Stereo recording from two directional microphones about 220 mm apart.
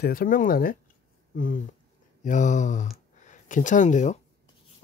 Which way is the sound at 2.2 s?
35° left (ahead or behind).